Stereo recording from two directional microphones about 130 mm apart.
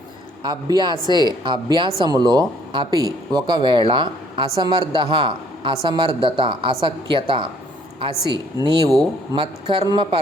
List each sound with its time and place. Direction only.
0.4 s speech: 35° right (ahead or behind)